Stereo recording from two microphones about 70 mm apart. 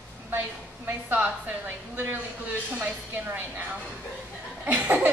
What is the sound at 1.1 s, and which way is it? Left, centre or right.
A woman's voice, right.